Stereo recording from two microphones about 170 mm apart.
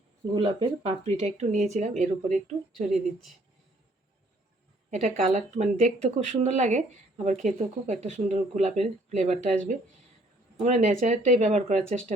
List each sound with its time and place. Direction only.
0.3 s speech: 30° right (ahead or behind); by 2.9 s 45° right (ahead or behind)
4.9 s speech: 50° right (ahead or behind)